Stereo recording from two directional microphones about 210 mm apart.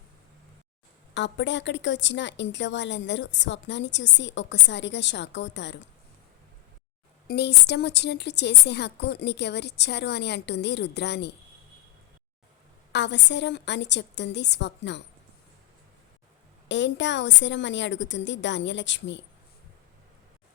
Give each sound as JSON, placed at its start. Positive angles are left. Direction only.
{"t": 1.1, "sound": "a woman's voice", "side_deg": 60}
{"t": 7.3, "sound": "a woman's voice", "side_deg": 50}
{"t": 12.9, "sound": "a woman's voice", "side_deg": 55}
{"t": 16.6, "sound": "a woman's voice", "side_deg": 60}